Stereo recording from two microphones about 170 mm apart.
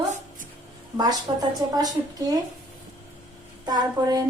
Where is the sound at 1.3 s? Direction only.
25° right (ahead or behind).